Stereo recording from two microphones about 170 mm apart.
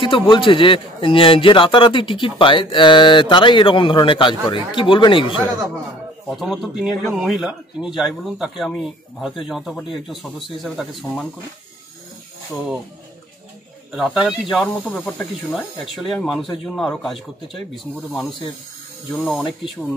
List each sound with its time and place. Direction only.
0.0 s a man's voice: 30° left (ahead or behind)
6.3 s speech: centre (ahead or behind)
13.9 s speech: centre (ahead or behind)
19.1 s speech: centre (ahead or behind)